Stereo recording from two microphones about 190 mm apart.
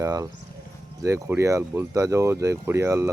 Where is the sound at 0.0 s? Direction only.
20° right (ahead or behind).